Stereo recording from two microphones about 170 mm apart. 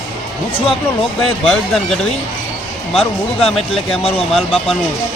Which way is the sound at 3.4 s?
35° left (ahead or behind).